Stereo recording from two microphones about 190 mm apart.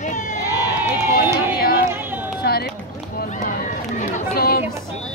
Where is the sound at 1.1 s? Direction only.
55° left (ahead or behind).